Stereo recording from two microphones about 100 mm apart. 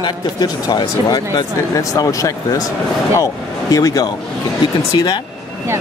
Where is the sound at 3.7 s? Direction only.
40° left (ahead or behind).